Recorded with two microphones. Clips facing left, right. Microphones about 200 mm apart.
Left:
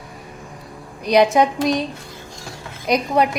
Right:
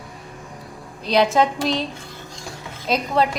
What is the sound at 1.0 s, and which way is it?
Speech, 15° left (ahead or behind).